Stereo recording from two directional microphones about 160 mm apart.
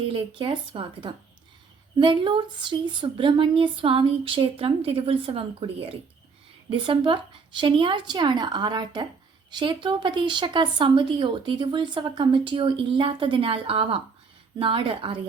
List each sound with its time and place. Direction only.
0.0 s speech: 35° right (ahead or behind)